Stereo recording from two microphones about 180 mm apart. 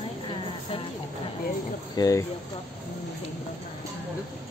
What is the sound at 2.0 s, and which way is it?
Speech, 20° left (ahead or behind).